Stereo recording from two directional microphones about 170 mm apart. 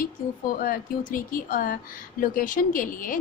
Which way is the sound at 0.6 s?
55° left (ahead or behind).